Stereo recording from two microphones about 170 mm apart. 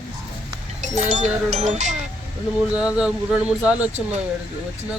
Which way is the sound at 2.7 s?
5° right (ahead or behind).